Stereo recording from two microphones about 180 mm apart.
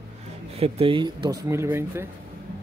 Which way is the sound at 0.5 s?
35° right (ahead or behind).